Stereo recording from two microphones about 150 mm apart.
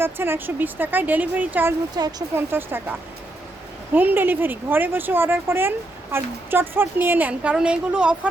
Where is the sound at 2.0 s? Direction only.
25° right (ahead or behind).